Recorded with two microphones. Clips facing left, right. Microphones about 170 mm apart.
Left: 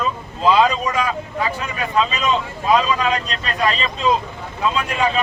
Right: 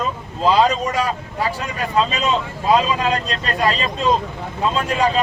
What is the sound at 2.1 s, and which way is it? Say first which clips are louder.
Speech: even; 35° right (ahead or behind).